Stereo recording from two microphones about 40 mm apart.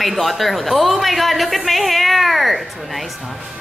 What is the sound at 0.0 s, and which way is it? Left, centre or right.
A woman's voice, centre.